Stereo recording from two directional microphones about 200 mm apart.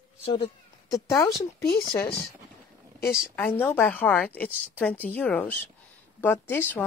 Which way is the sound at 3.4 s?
10° left (ahead or behind).